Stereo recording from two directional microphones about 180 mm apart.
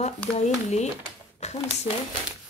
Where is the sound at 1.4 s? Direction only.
35° left (ahead or behind).